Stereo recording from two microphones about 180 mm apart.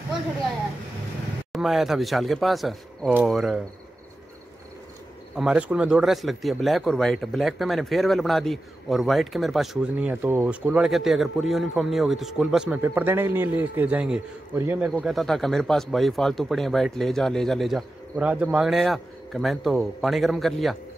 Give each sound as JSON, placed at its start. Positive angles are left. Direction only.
{"t": 1.5, "sound": "speech", "side_deg": 0}
{"t": 5.3, "sound": "speech", "side_deg": -5}